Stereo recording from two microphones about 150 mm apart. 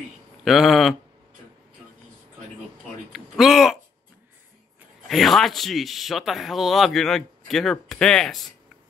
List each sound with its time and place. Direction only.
0.5 s speech: centre (ahead or behind)
3.1 s speech: centre (ahead or behind)
5.0 s speech: centre (ahead or behind)